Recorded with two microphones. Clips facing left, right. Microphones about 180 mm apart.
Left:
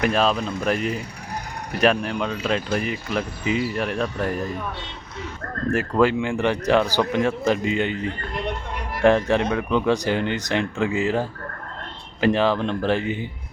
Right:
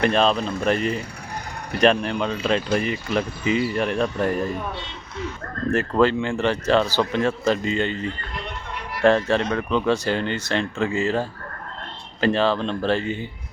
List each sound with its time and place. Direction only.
0.0 s speech: 5° left (ahead or behind)
5.7 s a man's voice: 10° left (ahead or behind)